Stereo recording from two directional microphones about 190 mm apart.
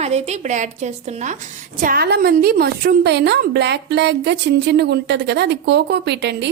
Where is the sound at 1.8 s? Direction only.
50° right (ahead or behind).